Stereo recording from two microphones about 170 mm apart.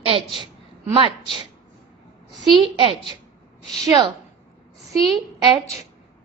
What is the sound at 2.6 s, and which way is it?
A woman's voice, 30° right (ahead or behind).